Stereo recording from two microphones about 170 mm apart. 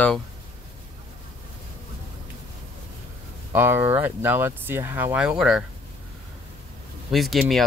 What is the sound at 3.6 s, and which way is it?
Speech, 15° right (ahead or behind).